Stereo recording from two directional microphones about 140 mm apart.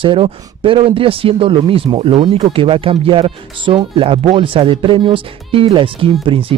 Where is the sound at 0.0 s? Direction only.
40° right (ahead or behind).